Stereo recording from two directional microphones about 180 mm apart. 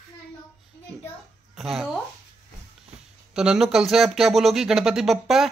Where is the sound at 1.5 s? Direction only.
Centre (ahead or behind).